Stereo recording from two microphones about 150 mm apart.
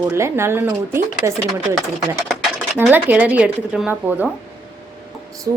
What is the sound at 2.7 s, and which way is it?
Speech, 15° right (ahead or behind).